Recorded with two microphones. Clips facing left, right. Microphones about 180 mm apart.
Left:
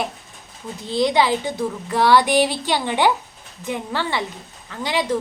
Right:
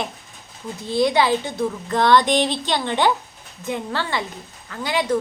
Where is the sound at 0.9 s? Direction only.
15° left (ahead or behind).